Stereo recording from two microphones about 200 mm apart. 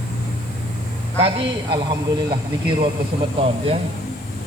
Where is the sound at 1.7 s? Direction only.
25° right (ahead or behind).